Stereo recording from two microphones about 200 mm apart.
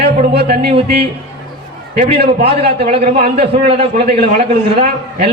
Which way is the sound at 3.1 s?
50° right (ahead or behind).